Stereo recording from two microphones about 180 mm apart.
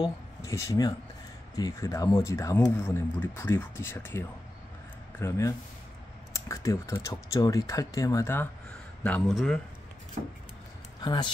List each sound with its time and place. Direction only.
0.0 s speech: 15° left (ahead or behind)
5.2 s speech: 15° left (ahead or behind)
9.3 s speech: centre (ahead or behind)
11.0 s speech: 25° left (ahead or behind)